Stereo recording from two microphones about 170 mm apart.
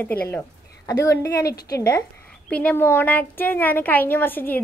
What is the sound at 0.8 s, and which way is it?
A woman's voice, 20° left (ahead or behind).